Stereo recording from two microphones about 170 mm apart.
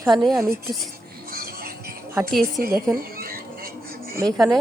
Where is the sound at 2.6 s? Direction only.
60° right (ahead or behind).